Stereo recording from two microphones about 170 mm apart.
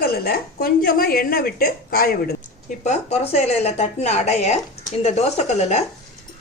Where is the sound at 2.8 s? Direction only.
40° left (ahead or behind).